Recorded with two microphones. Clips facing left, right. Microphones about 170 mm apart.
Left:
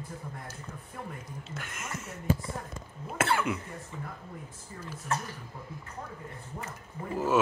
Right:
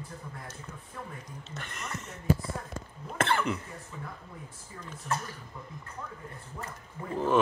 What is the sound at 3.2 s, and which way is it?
Cough, 5° left (ahead or behind).